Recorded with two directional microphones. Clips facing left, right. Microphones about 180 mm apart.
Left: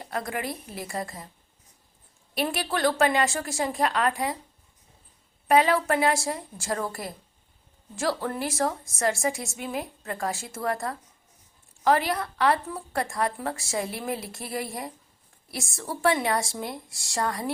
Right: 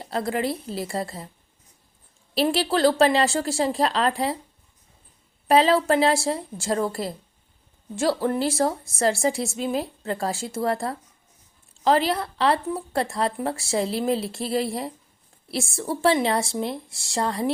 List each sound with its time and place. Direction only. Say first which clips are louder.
0.0 s speech: right 6 dB; 30° right (ahead or behind)
2.3 s speech: right 6 dB; 30° right (ahead or behind)
5.5 s speech: right 3 dB; 30° right (ahead or behind)